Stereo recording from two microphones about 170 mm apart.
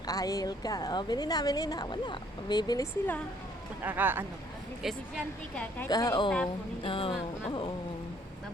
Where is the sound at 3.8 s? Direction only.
10° right (ahead or behind).